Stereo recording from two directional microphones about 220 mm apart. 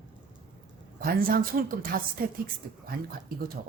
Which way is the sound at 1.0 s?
40° right (ahead or behind).